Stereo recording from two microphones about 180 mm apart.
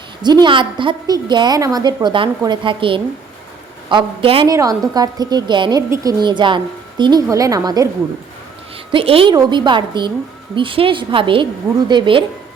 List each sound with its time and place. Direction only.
0.2 s a woman's voice: 25° right (ahead or behind)
4.5 s a woman's voice: 20° right (ahead or behind)
8.9 s a woman's voice: 30° right (ahead or behind)